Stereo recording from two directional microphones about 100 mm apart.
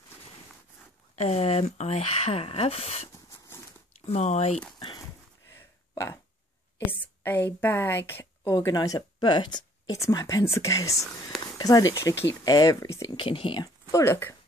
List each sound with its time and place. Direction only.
1.1 s speech: 90° left
4.7 s a sound: 55° left (ahead or behind)
5.5 s a sound: 25° left (ahead or behind)
6.9 s a woman's voice: 20° left (ahead or behind)
8.6 s speech: 35° left (ahead or behind)
9.9 s speech: 30° left (ahead or behind)
13.1 s speech: 60° left (ahead or behind)
13.9 s a woman's voice: 30° left (ahead or behind)